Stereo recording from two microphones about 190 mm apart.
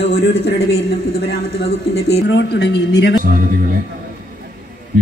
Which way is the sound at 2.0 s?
60° left (ahead or behind).